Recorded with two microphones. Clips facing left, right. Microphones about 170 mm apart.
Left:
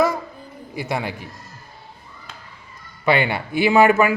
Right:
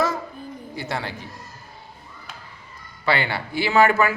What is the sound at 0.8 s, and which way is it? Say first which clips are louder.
Speech: left 4 dB; 15° left (ahead or behind).